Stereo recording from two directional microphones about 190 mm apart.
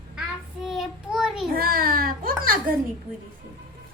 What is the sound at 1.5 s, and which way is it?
Speech, 50° right (ahead or behind).